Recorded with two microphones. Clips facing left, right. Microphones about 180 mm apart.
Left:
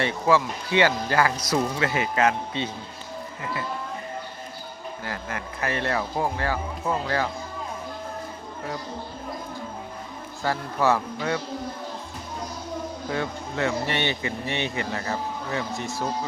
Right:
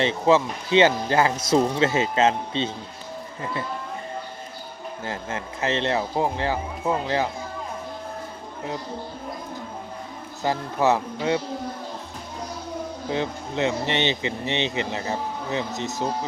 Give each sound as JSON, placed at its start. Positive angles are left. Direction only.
{"t": 0.0, "sound": "speech", "side_deg": -20}
{"t": 5.0, "sound": "speech", "side_deg": -25}
{"t": 10.4, "sound": "a man's voice", "side_deg": -20}
{"t": 13.1, "sound": "speech", "side_deg": -20}